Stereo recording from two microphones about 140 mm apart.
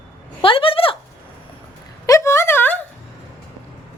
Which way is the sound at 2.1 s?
20° left (ahead or behind).